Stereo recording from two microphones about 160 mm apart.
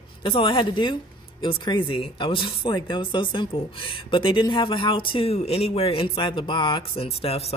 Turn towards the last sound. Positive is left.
turn(degrees=40)  # may be behind; listen again after turning